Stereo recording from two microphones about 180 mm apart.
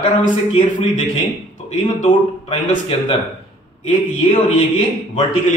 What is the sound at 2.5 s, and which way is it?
Speech, 35° left (ahead or behind).